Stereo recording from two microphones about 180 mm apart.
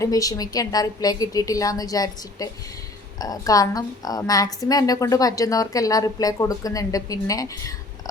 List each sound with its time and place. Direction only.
0.0 s a woman's voice: 20° left (ahead or behind)